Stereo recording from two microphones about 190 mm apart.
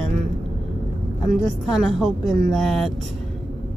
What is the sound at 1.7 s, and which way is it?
Speech, centre (ahead or behind).